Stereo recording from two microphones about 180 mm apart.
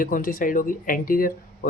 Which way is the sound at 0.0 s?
50° left (ahead or behind).